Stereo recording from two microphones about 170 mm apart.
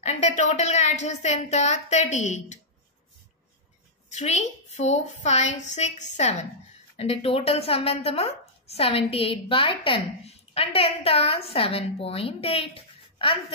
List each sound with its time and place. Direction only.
0.0 s a woman's voice: 45° left (ahead or behind)
4.1 s a woman's voice: 45° left (ahead or behind)